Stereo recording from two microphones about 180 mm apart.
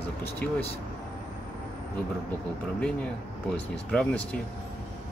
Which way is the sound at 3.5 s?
5° left (ahead or behind).